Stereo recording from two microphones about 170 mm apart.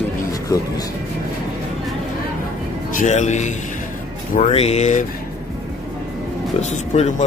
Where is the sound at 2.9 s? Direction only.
45° left (ahead or behind).